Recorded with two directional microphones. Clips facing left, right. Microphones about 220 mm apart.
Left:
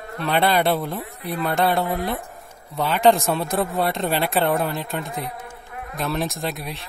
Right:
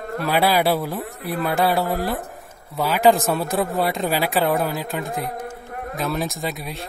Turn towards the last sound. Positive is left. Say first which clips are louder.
# even
turn(degrees=0)  # may be behind; listen again after turning